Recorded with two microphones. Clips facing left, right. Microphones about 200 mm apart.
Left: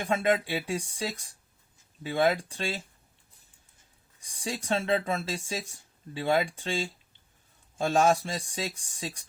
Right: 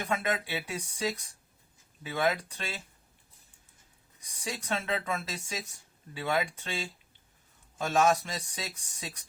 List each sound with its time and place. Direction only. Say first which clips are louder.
0.0 s speech: left 5 dB; 30° left (ahead or behind)
4.2 s speech: left 3 dB; 30° left (ahead or behind)